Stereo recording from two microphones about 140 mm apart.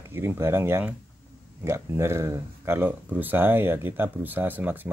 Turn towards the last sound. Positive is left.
turn(degrees=-15)  # may be behind; listen again after turning